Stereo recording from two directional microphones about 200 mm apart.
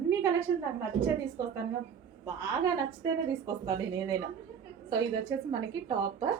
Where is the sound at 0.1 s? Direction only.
15° right (ahead or behind).